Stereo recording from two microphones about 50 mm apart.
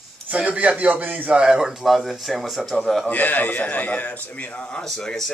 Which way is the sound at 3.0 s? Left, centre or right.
Left.